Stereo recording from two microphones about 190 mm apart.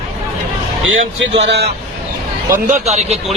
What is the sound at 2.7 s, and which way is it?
Speech, 35° right (ahead or behind).